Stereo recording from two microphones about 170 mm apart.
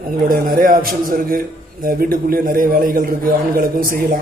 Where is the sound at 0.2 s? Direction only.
55° right (ahead or behind).